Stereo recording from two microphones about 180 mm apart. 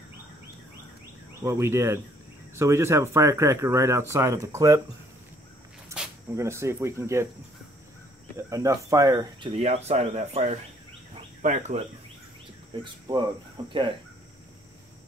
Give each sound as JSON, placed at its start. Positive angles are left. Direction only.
{"t": 1.4, "sound": "speech", "side_deg": -15}
{"t": 6.3, "sound": "speech", "side_deg": -15}
{"t": 8.5, "sound": "speech", "side_deg": -20}
{"t": 12.8, "sound": "speech", "side_deg": -25}